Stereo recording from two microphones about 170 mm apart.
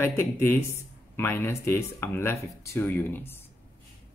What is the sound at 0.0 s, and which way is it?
Speech, 15° left (ahead or behind).